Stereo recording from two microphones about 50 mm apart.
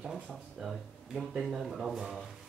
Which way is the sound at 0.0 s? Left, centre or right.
Centre.